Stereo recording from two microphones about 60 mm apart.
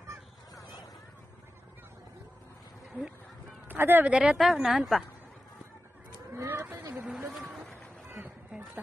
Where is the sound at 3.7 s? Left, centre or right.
Right.